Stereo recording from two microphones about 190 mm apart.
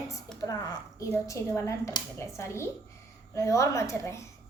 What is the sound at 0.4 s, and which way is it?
Speech, 15° left (ahead or behind).